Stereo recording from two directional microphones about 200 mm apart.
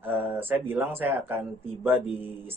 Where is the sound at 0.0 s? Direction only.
10° right (ahead or behind).